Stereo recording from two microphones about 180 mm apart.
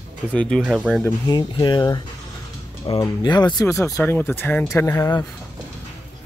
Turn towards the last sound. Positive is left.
turn(degrees=20)  # may be behind; listen again after turning